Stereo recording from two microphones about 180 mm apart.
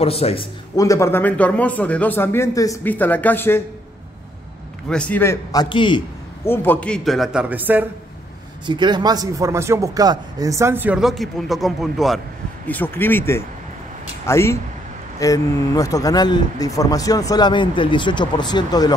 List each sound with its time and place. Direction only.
0.0 s speech: 35° left (ahead or behind)
0.7 s speech: 15° left (ahead or behind)
4.8 s speech: 5° left (ahead or behind); by 6.0 s 25° left (ahead or behind)
6.4 s a man's voice: 10° left (ahead or behind); by 7.8 s 10° right (ahead or behind)
8.6 s speech: 25° right (ahead or behind); by 18.9 s 20° left (ahead or behind)